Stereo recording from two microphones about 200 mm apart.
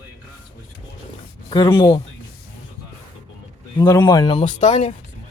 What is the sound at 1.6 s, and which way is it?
Speech, 20° left (ahead or behind).